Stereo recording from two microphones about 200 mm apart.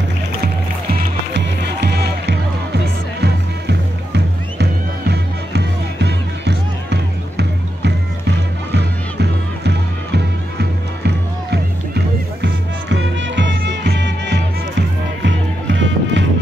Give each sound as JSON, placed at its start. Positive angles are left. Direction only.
{"t": 0.9, "sound": "music", "side_deg": -55}
{"t": 12.9, "sound": "music", "side_deg": -65}